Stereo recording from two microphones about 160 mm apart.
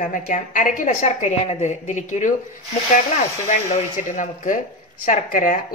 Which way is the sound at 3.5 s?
50° left (ahead or behind).